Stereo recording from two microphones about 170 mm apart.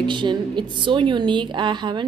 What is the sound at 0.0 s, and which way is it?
A woman's voice, 30° right (ahead or behind).